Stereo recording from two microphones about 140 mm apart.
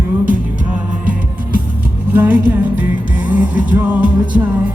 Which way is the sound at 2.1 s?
10° right (ahead or behind).